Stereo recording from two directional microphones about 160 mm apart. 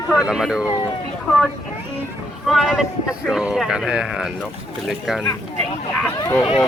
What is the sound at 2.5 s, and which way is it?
Speech, centre (ahead or behind).